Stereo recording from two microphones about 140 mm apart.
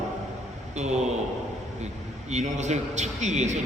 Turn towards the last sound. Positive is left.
turn(degrees=-55)  # may be behind; listen again after turning